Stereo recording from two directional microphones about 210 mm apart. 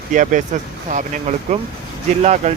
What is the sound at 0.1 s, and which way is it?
Speech, 40° right (ahead or behind).